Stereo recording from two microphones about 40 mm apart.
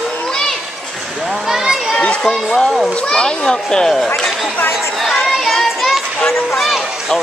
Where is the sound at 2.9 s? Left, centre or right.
Left.